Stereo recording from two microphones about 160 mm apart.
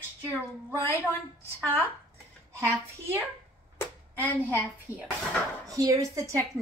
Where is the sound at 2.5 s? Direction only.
15° right (ahead or behind).